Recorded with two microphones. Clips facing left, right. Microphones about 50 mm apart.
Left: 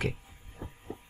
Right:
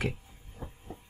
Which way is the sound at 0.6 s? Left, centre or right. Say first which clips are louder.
Even; left.